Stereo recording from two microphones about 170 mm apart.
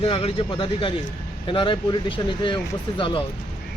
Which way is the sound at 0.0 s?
30° left (ahead or behind).